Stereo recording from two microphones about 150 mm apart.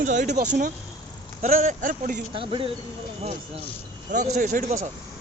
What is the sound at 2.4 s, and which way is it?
Speech, 35° right (ahead or behind).